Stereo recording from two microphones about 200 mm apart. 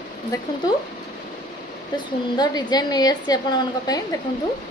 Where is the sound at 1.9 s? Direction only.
20° left (ahead or behind).